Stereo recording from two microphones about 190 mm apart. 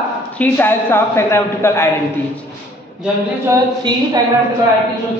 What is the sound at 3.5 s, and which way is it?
Speech, 20° right (ahead or behind).